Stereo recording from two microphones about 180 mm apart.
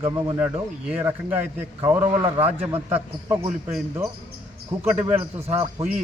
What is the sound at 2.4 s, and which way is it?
Speech, 35° right (ahead or behind).